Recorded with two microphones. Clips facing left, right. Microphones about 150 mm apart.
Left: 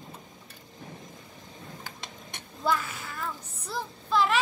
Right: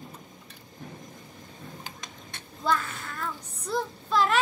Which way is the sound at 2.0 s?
20° left (ahead or behind).